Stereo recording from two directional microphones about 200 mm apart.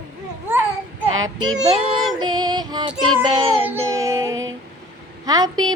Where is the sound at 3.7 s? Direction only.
15° right (ahead or behind).